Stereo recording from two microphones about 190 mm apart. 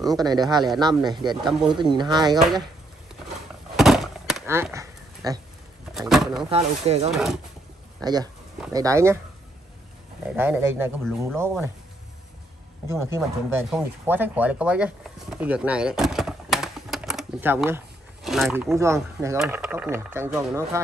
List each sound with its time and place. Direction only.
0.0 s speech: 20° right (ahead or behind)
3.7 s a sound: centre (ahead or behind)
4.7 s a sound: 20° right (ahead or behind)
5.9 s a sound: centre (ahead or behind)
6.5 s speech: 35° right (ahead or behind)
7.1 s speech: centre (ahead or behind)
8.0 s speech: 20° right (ahead or behind)
10.2 s speech: 10° right (ahead or behind)
12.8 s speech: 15° right (ahead or behind)
19.3 s speech: 5° right (ahead or behind)